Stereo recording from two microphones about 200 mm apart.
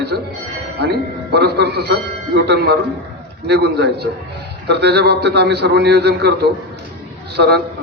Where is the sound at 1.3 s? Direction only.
55° right (ahead or behind).